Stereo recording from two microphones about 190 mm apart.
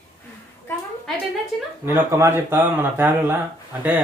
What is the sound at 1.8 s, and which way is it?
Speech, 15° right (ahead or behind).